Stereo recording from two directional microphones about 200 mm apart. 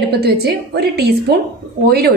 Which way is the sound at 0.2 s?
55° right (ahead or behind).